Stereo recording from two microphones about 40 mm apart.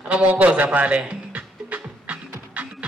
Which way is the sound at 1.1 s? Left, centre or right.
Right.